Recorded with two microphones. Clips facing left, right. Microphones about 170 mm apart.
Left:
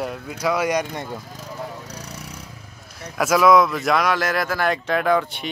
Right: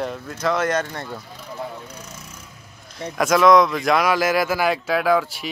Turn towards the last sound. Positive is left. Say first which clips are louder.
# right 1 dB
turn(degrees=0)  # may be behind; listen again after turning